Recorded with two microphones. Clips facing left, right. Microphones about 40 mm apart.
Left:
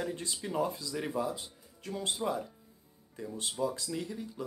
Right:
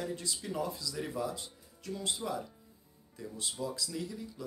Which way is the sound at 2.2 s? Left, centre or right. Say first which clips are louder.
Left 6 dB; left.